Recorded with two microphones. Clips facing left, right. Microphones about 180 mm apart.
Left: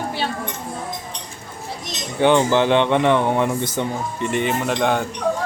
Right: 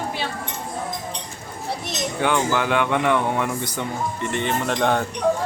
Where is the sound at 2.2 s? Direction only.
25° left (ahead or behind).